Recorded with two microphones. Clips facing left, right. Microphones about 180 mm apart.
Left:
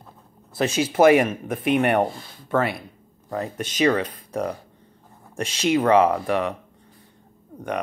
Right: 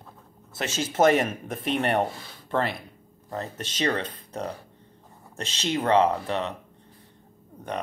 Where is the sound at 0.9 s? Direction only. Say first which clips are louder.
Left 4 dB; 10° left (ahead or behind).